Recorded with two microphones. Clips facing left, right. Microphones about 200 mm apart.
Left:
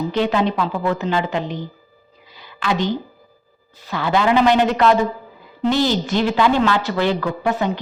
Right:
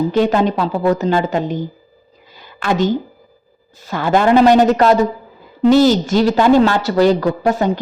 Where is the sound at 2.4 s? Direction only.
50° right (ahead or behind).